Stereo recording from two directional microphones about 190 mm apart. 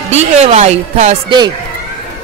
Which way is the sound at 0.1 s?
35° right (ahead or behind).